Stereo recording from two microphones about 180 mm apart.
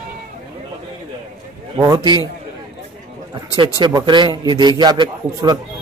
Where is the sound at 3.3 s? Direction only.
25° right (ahead or behind).